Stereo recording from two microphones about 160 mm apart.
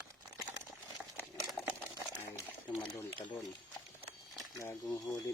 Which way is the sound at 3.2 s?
30° left (ahead or behind).